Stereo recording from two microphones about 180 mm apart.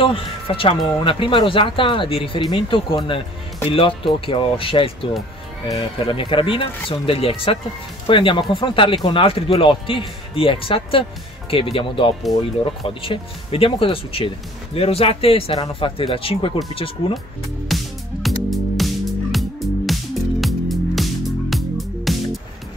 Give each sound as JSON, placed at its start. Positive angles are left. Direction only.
{"t": 0.0, "sound": "speech", "side_deg": 30}
{"t": 17.6, "sound": "music", "side_deg": 0}